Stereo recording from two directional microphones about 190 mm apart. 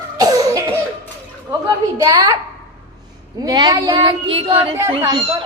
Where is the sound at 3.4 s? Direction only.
25° right (ahead or behind).